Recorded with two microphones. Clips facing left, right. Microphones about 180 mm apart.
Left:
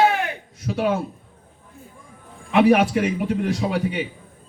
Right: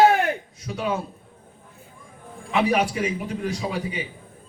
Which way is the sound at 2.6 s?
60° left (ahead or behind).